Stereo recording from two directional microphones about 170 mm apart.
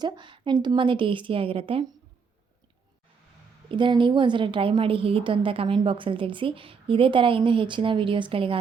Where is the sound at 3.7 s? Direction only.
30° right (ahead or behind).